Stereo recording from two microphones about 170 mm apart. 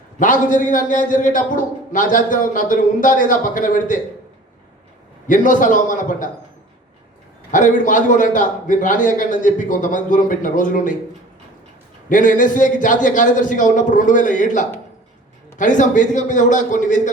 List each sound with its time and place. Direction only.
0.2 s a man's voice: 50° left (ahead or behind)
5.3 s a man's voice: 50° left (ahead or behind)
7.5 s a man's voice: 50° left (ahead or behind)
12.0 s a man's voice: 50° left (ahead or behind)